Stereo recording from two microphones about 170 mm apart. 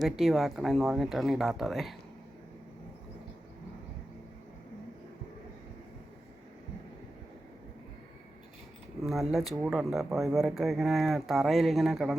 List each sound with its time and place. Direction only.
0.0 s speech: centre (ahead or behind)
9.0 s speech: centre (ahead or behind)